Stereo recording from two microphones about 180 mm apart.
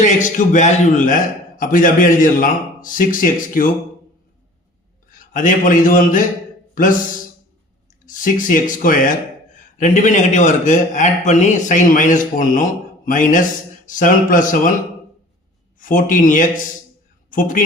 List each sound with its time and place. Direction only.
0.0 s a man's voice: 45° left (ahead or behind)
5.1 s a man's voice: 45° left (ahead or behind)
8.0 s a man's voice: 45° left (ahead or behind)
15.8 s a man's voice: 45° left (ahead or behind)